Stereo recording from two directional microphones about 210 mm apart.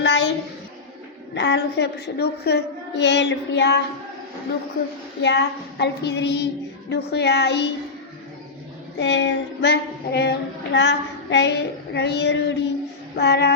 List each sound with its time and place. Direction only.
0.0 s a sound: 55° left (ahead or behind)
1.3 s a woman's voice: 55° left (ahead or behind)
5.2 s a woman's voice: 55° left (ahead or behind)
9.0 s a woman's voice: 55° left (ahead or behind)